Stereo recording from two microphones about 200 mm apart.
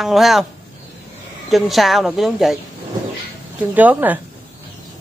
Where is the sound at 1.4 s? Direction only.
Centre (ahead or behind).